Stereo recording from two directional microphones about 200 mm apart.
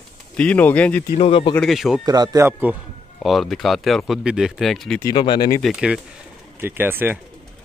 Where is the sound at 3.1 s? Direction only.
Centre (ahead or behind).